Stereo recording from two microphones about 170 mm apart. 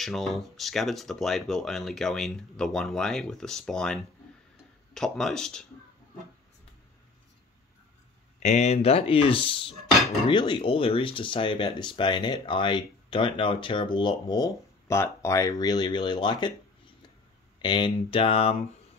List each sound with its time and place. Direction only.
0.0 s speech: centre (ahead or behind)
8.4 s speech: 40° left (ahead or behind); by 16.5 s 25° left (ahead or behind)
17.6 s speech: 25° left (ahead or behind)